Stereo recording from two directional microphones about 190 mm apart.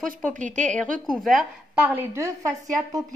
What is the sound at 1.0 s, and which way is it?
Speech, centre (ahead or behind).